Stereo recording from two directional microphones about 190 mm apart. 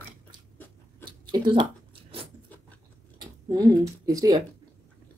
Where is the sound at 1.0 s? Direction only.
25° right (ahead or behind).